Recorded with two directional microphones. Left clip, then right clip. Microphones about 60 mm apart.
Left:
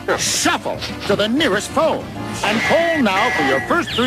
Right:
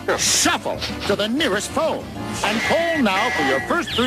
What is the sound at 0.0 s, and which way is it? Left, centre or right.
Speech, right.